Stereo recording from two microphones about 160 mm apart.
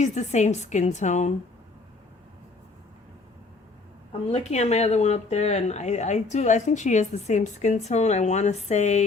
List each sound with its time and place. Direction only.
0.0 s speech: 45° left (ahead or behind)
4.1 s speech: 40° left (ahead or behind)